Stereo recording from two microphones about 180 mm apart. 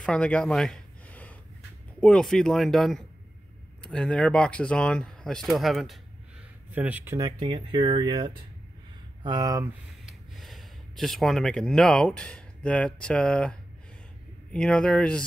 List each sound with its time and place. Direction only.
0.0 s a sound: 5° left (ahead or behind)
2.0 s speech: 5° left (ahead or behind)
7.2 s speech: 25° right (ahead or behind)
10.0 s speech: centre (ahead or behind)